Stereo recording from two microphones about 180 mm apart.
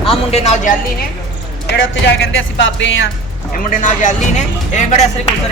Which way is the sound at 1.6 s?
75° left (ahead or behind).